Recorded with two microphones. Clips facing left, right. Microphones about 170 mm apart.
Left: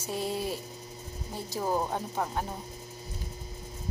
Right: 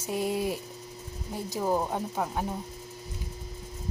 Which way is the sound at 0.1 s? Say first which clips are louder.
Right 3 dB; 15° right (ahead or behind).